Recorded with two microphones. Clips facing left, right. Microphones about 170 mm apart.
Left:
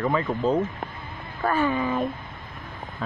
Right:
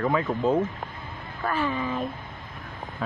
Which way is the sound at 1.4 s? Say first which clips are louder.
Left 4 dB; 45° left (ahead or behind).